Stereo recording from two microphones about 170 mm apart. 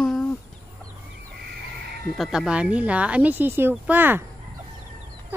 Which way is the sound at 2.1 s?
Centre (ahead or behind).